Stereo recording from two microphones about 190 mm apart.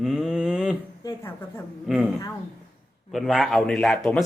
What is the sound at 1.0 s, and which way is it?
Speech, 15° left (ahead or behind).